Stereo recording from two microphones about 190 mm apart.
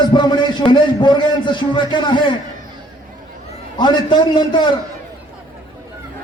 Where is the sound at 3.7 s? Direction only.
25° left (ahead or behind).